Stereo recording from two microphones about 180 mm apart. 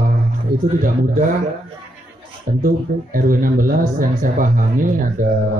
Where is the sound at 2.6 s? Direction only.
50° right (ahead or behind).